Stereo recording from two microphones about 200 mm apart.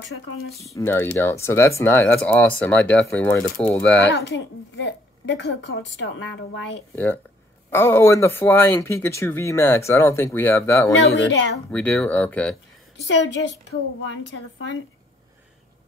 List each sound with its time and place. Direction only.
0.7 s speech: 10° left (ahead or behind)
4.1 s a woman's voice: 60° left (ahead or behind)
7.7 s speech: 10° left (ahead or behind)
11.1 s a woman's voice: 65° left (ahead or behind)
11.7 s speech: 5° left (ahead or behind)
12.9 s a woman's voice: 65° left (ahead or behind)